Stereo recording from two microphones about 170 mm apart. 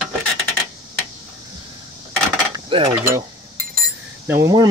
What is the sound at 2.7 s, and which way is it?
Mechanisms, 30° right (ahead or behind).